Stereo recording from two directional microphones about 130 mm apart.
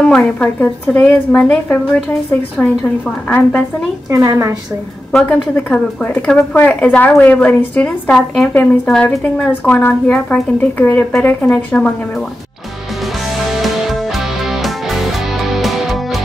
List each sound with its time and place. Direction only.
0.1 s a woman's voice: 10° left (ahead or behind)
4.1 s a woman's voice: 20° right (ahead or behind)
5.1 s a woman's voice: 10° left (ahead or behind)
13.6 s music: centre (ahead or behind)